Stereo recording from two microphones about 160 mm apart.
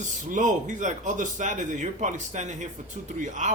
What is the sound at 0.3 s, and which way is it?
Speech, 50° right (ahead or behind).